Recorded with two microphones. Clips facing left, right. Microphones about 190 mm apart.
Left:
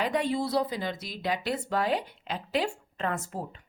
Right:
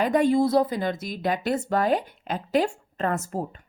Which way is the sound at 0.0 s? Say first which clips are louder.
Right 8 dB; 45° right (ahead or behind).